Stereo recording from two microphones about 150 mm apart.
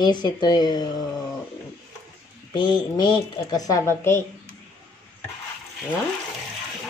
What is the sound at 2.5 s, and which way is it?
A woman's voice, 30° left (ahead or behind).